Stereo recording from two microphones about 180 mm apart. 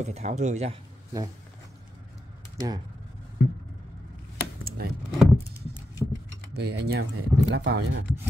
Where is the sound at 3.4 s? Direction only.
60° left (ahead or behind).